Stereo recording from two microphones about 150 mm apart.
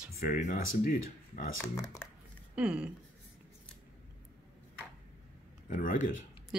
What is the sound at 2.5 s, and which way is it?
Speech, 5° right (ahead or behind).